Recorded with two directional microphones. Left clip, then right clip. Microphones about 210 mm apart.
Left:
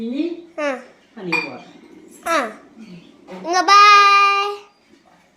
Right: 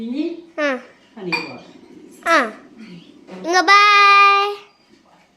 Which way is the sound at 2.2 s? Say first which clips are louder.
Right 4 dB; 20° right (ahead or behind).